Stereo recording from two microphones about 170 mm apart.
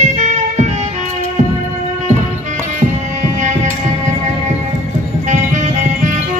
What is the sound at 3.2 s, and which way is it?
Music, 45° right (ahead or behind).